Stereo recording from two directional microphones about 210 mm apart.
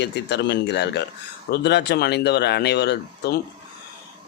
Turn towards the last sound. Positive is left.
turn(degrees=55)  # may be behind; listen again after turning